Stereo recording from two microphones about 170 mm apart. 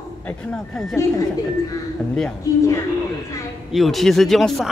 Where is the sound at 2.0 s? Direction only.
10° left (ahead or behind).